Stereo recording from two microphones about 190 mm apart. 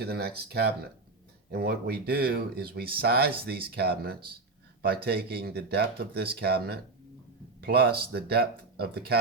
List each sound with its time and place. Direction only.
0.0 s speech: 55° right (ahead or behind)